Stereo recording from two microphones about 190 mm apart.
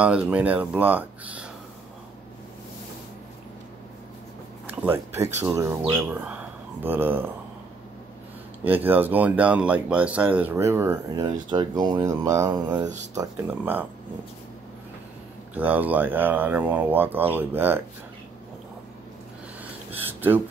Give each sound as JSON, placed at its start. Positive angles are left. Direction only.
{"t": 0.0, "sound": "speech", "side_deg": -5}
{"t": 4.6, "sound": "speech", "side_deg": -10}
{"t": 8.6, "sound": "speech", "side_deg": -10}
{"t": 15.5, "sound": "speech", "side_deg": -10}
{"t": 20.0, "sound": "a sound", "side_deg": -10}